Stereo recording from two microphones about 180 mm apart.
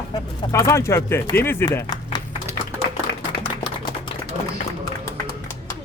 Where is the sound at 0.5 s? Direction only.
15° left (ahead or behind).